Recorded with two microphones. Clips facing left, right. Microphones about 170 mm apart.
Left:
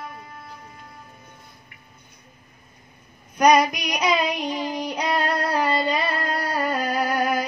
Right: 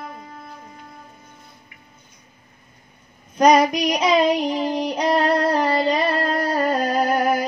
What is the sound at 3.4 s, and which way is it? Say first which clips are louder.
Child singing: right 3 dB; 30° right (ahead or behind).